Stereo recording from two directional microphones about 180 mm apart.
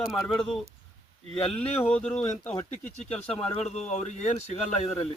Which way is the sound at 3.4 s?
35° left (ahead or behind).